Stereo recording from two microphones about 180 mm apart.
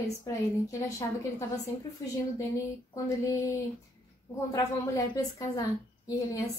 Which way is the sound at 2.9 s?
20° left (ahead or behind).